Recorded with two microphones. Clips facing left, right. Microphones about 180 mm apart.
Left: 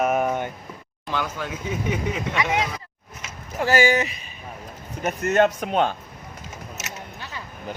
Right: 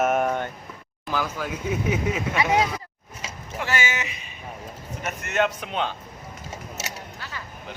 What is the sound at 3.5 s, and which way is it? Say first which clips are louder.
A man's voice: left 8 dB; 35° left (ahead or behind).